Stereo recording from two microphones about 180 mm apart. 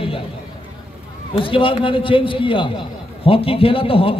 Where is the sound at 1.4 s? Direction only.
30° left (ahead or behind).